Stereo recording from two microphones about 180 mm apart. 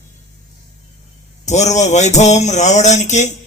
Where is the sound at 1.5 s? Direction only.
40° left (ahead or behind).